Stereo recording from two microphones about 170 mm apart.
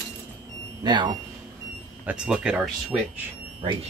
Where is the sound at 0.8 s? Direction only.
25° right (ahead or behind).